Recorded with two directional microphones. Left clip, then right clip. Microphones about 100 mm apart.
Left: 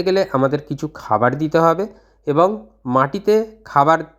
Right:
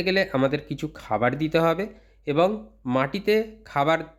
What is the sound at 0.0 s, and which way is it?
Speech, 25° left (ahead or behind).